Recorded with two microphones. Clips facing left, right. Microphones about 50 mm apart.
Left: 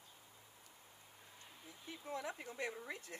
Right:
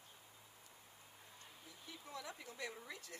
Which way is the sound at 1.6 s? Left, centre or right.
Left.